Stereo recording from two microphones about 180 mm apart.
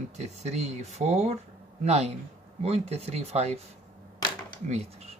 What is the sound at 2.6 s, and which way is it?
Speech, 35° right (ahead or behind).